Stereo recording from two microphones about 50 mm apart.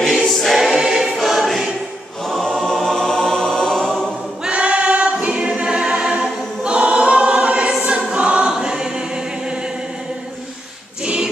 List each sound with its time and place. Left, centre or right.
0.0 s choir: centre
4.5 s choir: right